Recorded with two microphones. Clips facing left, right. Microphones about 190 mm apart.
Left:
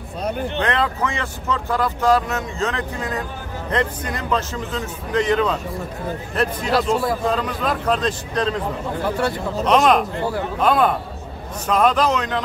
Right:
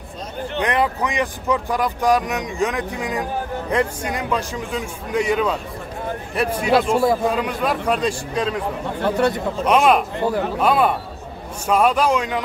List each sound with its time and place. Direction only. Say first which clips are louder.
0.6 s speech: right 4 dB; 15° right (ahead or behind)
9.0 s speech: right 4 dB; 20° right (ahead or behind)
9.7 s speech: even; 5° right (ahead or behind)